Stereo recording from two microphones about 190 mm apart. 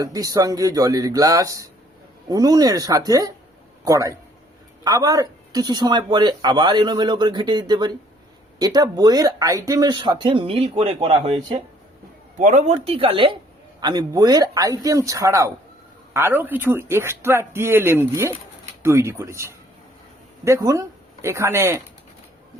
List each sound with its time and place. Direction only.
0.0 s a man's voice: 20° right (ahead or behind)
12.4 s a man's voice: 40° right (ahead or behind); by 21.8 s 15° right (ahead or behind)